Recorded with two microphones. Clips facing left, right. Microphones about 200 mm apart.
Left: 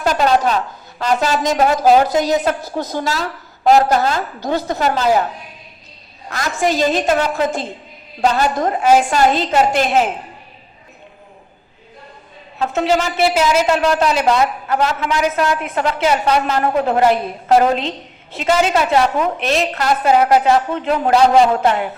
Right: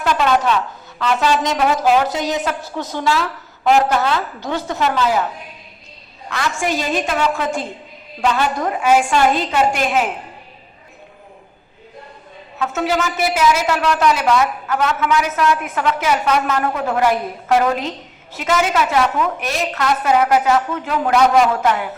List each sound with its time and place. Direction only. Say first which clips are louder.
0.0 s a woman's voice: left 2 dB; 40° left (ahead or behind)
6.3 s a woman's voice: left 3 dB; 40° left (ahead or behind)
12.6 s a woman's voice: left 3 dB; 35° left (ahead or behind)